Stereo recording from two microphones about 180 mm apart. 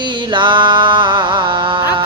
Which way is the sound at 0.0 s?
25° right (ahead or behind).